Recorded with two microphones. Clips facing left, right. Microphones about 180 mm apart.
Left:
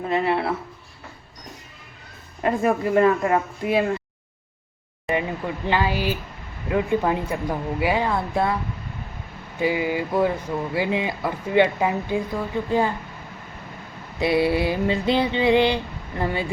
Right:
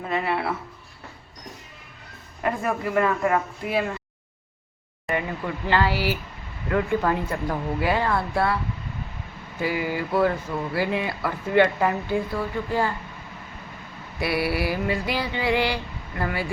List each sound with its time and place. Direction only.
0.1 s a sound: 25° left (ahead or behind)
2.4 s mantra: 25° left (ahead or behind)
5.0 s speech: 20° left (ahead or behind)
9.6 s speech: 20° left (ahead or behind)
14.2 s mantra: 20° left (ahead or behind)